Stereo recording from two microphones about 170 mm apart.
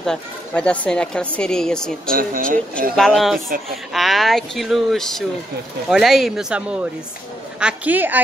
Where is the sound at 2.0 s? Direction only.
55° right (ahead or behind).